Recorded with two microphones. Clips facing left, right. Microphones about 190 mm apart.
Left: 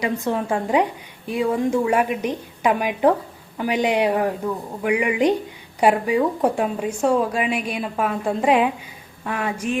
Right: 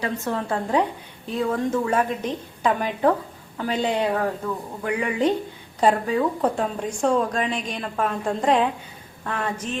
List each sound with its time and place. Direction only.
0.0 s a woman's voice: 15° left (ahead or behind)